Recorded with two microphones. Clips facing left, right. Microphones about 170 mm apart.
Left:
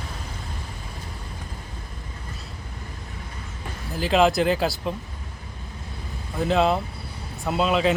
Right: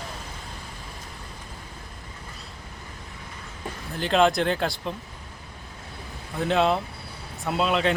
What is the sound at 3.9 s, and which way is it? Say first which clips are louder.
Speech: left 2 dB; 5° left (ahead or behind).